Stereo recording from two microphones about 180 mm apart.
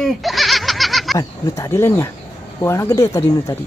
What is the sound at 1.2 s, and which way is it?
Speech, 20° left (ahead or behind).